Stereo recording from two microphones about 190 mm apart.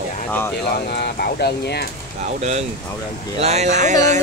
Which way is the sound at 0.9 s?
55° left (ahead or behind).